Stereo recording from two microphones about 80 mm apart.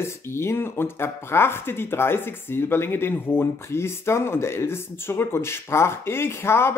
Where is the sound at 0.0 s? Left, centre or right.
Left.